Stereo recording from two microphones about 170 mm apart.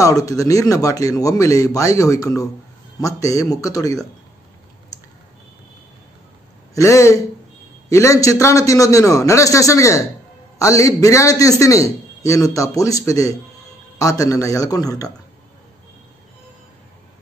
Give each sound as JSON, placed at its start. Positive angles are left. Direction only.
{"t": 0.0, "sound": "a man's voice", "side_deg": 20}
{"t": 6.7, "sound": "a man's voice", "side_deg": 20}